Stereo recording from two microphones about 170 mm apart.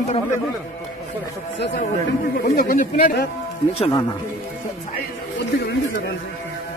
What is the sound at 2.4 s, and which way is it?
Speech, 55° left (ahead or behind).